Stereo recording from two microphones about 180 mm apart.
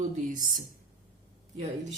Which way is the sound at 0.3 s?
45° right (ahead or behind).